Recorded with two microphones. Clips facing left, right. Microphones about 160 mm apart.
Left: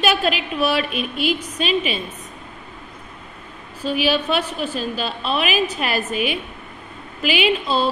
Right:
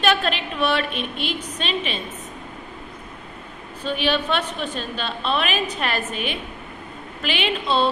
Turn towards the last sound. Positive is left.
turn(degrees=5)  # may be behind; listen again after turning